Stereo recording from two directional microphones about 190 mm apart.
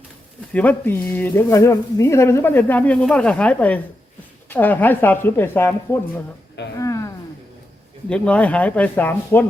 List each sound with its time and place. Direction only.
0.5 s speech: 10° left (ahead or behind)
6.7 s a sound: 15° left (ahead or behind)
8.1 s speech: 5° left (ahead or behind)